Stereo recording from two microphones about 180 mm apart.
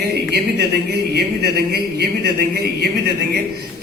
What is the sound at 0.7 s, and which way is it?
A man's voice, 65° right (ahead or behind).